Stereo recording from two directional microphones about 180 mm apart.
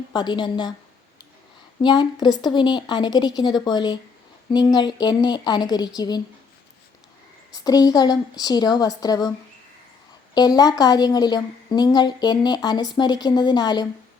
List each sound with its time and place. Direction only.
0.1 s a woman's voice: 25° left (ahead or behind)
1.8 s a woman's voice: 25° left (ahead or behind)
7.5 s a woman's voice: 20° left (ahead or behind)
10.3 s a woman's voice: 20° left (ahead or behind)